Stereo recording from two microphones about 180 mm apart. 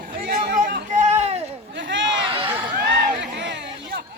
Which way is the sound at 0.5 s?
45° right (ahead or behind).